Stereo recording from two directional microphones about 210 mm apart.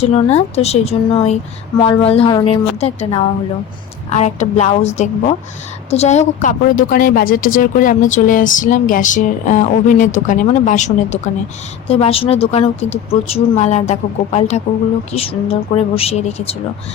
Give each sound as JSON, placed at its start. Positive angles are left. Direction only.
{"t": 0.0, "sound": "a woman's voice", "side_deg": 30}